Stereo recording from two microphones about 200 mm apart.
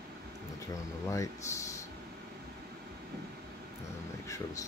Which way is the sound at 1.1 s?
15° left (ahead or behind).